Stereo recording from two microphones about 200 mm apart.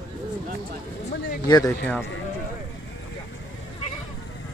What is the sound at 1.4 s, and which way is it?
Speech, 20° left (ahead or behind).